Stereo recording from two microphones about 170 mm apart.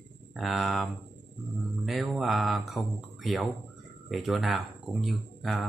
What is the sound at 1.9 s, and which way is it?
Speech, centre (ahead or behind).